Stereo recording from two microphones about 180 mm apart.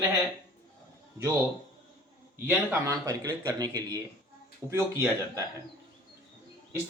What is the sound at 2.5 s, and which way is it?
A man's voice, 15° right (ahead or behind).